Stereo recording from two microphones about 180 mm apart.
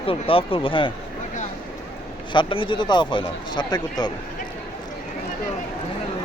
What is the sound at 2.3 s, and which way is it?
Speech, 25° left (ahead or behind).